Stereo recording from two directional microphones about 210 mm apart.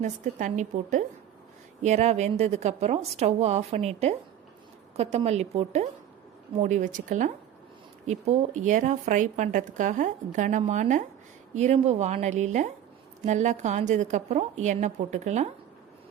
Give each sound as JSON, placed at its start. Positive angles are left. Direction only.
{"t": 0.0, "sound": "a woman's voice", "side_deg": -35}